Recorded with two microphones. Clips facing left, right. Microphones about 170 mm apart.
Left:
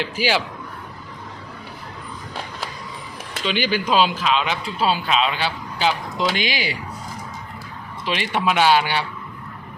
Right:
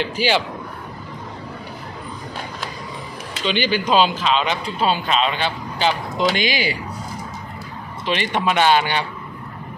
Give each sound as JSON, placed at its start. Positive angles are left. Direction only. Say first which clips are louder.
{"t": 0.0, "sound": "speech", "louder": "right 2 dB", "side_deg": 5}
{"t": 3.4, "sound": "speech", "louder": "right 2 dB", "side_deg": 5}
{"t": 8.0, "sound": "speech", "louder": "right 1 dB", "side_deg": 5}